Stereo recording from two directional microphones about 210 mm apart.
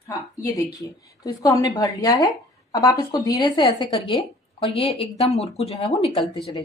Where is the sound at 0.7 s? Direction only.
15° left (ahead or behind).